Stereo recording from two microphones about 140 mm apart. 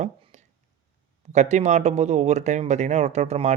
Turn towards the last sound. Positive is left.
turn(degrees=-55)  # may be behind; listen again after turning